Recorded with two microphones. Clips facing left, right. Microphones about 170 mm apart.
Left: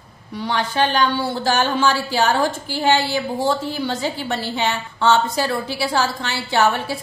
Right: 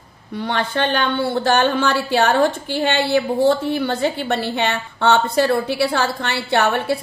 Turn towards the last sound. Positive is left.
turn(degrees=-60)  # may be behind; listen again after turning